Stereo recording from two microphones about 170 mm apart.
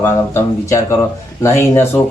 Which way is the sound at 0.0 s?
15° left (ahead or behind).